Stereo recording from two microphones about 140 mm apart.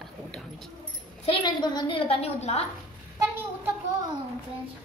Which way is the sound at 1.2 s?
35° left (ahead or behind).